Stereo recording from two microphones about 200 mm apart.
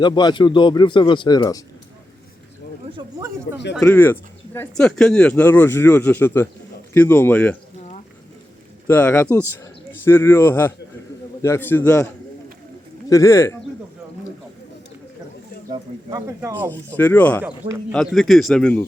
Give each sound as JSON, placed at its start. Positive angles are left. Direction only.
{"t": 0.0, "sound": "speech", "side_deg": 20}
{"t": 2.9, "sound": "speech", "side_deg": -15}
{"t": 3.8, "sound": "speech", "side_deg": 10}
{"t": 8.9, "sound": "speech", "side_deg": 10}
{"t": 15.7, "sound": "speech", "side_deg": -20}
{"t": 16.7, "sound": "speech", "side_deg": 10}
{"t": 17.4, "sound": "speech", "side_deg": -10}
{"t": 17.9, "sound": "a man's voice", "side_deg": 0}